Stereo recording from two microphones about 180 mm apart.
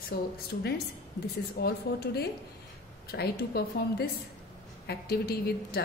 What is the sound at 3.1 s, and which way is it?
A woman's voice, 60° left (ahead or behind).